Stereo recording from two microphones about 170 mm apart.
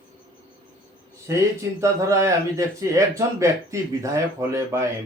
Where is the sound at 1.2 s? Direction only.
15° right (ahead or behind).